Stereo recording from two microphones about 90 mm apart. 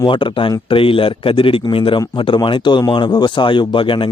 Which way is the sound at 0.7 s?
85° left.